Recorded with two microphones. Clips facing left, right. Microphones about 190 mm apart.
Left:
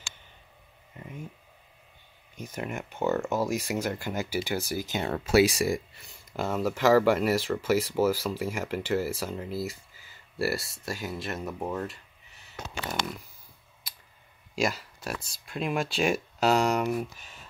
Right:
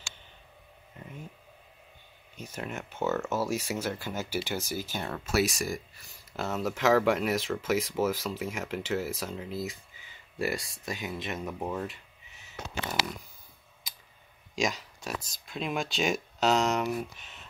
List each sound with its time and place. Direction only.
2.5 s speech: 10° left (ahead or behind)
5.1 s speech: 30° left (ahead or behind)
6.3 s speech: 10° left (ahead or behind)
14.5 s speech: 5° left (ahead or behind)